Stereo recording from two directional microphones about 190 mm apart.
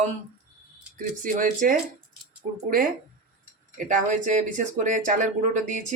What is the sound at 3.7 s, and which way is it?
Speech, 40° right (ahead or behind).